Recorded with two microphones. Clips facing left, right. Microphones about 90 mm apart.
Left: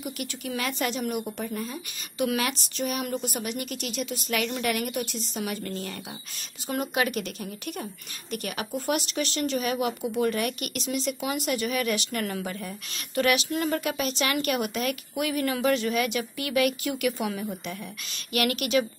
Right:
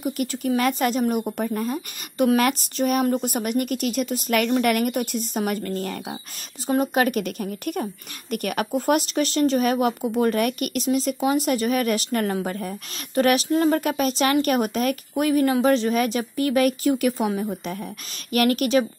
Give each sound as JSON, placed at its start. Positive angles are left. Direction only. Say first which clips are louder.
{"t": 0.0, "sound": "a woman's voice", "louder": "right 9 dB", "side_deg": -40}